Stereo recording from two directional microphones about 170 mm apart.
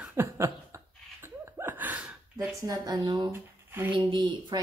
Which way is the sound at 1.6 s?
10° right (ahead or behind).